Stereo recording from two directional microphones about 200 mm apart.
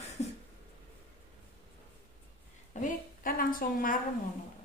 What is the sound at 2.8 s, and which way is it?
A woman's voice, 45° left (ahead or behind).